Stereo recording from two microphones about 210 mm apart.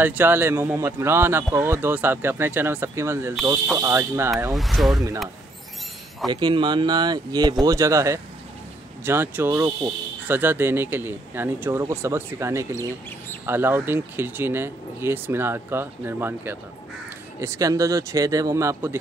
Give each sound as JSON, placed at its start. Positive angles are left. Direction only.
{"t": 0.0, "sound": "speech", "side_deg": -10}
{"t": 4.6, "sound": "speech", "side_deg": 0}
{"t": 6.2, "sound": "speech", "side_deg": -20}